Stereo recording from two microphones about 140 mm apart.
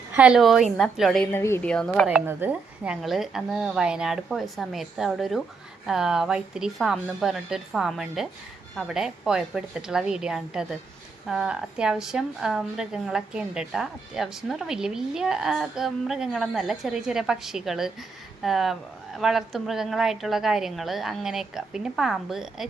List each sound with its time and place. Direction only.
0.2 s a woman's voice: 5° right (ahead or behind)
1.2 s a woman's voice: 15° left (ahead or behind)
1.6 s a woman's voice: 5° left (ahead or behind)
2.0 s a woman's voice: 10° right (ahead or behind)